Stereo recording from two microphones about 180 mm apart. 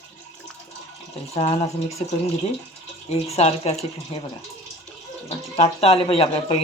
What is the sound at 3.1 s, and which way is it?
A man's voice, 35° left (ahead or behind).